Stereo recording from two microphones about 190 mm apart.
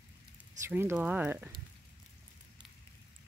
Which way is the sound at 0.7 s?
10° right (ahead or behind).